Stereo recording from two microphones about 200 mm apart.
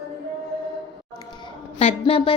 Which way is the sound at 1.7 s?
30° left (ahead or behind).